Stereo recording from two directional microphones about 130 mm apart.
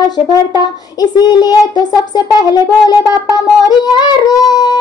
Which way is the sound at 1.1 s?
30° left (ahead or behind).